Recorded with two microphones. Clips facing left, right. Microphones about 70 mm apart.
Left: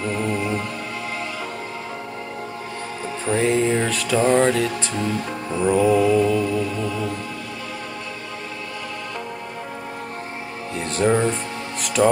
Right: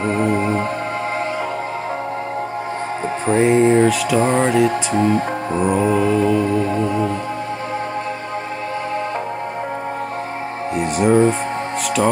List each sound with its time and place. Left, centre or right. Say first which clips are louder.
0.0 s speech: right 6 dB; right
3.3 s music: right 6 dB; right
4.2 s speech: right 1 dB; right
10.8 s music: right 3 dB; centre
12.0 s speech: left 1 dB; centre